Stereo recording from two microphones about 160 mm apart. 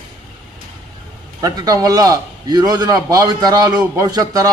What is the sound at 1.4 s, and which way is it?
A man's voice, 25° right (ahead or behind).